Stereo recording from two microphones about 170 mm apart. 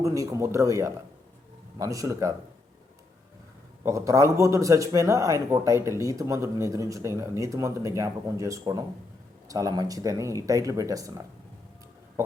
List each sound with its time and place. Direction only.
0.0 s speech: 20° right (ahead or behind)
3.8 s speech: 20° right (ahead or behind)